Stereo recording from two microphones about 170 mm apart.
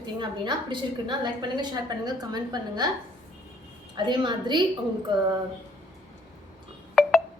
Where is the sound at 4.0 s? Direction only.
25° right (ahead or behind).